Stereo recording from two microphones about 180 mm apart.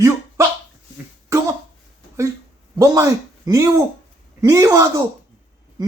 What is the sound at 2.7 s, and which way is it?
A man's voice, 20° right (ahead or behind).